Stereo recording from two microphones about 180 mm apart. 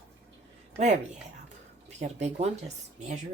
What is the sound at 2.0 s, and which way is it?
Speech, 40° right (ahead or behind).